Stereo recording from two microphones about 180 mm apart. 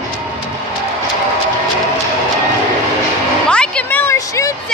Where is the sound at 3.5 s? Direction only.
5° left (ahead or behind).